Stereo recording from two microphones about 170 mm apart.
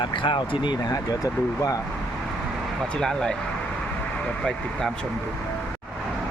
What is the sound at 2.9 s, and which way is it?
Speech, 5° left (ahead or behind).